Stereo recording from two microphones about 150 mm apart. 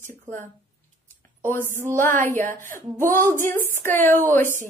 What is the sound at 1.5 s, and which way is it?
A woman's voice, 15° left (ahead or behind).